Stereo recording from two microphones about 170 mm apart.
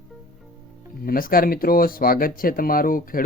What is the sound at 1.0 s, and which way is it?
Speech, 60° left (ahead or behind).